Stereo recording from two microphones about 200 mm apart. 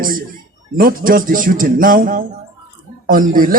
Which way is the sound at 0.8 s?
45° right (ahead or behind).